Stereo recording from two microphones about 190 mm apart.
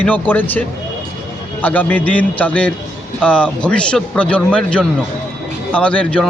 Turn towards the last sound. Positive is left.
turn(degrees=5)  # may be behind; listen again after turning